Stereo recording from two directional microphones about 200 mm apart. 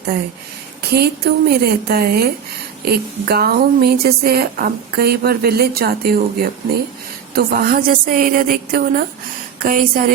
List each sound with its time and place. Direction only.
0.8 s a woman's voice: 55° right (ahead or behind)